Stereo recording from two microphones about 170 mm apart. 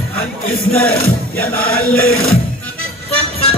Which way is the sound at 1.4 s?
60° left (ahead or behind).